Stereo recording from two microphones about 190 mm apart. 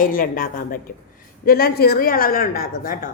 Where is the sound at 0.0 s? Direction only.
50° left (ahead or behind).